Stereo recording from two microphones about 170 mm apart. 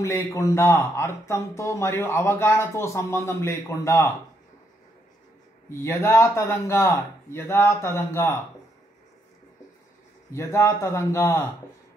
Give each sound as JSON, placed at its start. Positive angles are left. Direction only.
{"t": 0.0, "sound": "speech", "side_deg": 15}
{"t": 5.7, "sound": "speech", "side_deg": 15}
{"t": 10.3, "sound": "speech", "side_deg": 15}